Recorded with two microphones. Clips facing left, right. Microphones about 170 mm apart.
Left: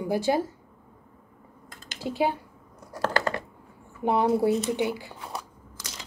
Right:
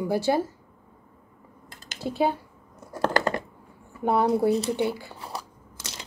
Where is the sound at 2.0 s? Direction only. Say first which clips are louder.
Right 1 dB; 15° left (ahead or behind).